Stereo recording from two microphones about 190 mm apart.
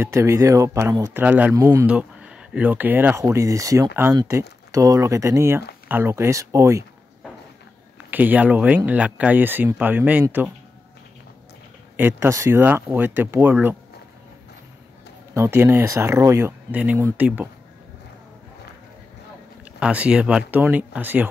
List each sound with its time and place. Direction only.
0.0 s speech: 15° right (ahead or behind)
8.1 s speech: 10° right (ahead or behind)
12.0 s speech: 10° right (ahead or behind)
15.3 s speech: 15° right (ahead or behind)
19.8 s speech: 5° right (ahead or behind)